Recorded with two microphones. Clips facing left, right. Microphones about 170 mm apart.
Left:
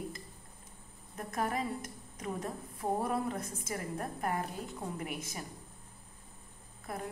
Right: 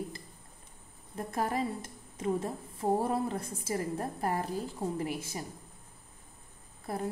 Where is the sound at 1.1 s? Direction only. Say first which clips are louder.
Right 3 dB; 30° right (ahead or behind).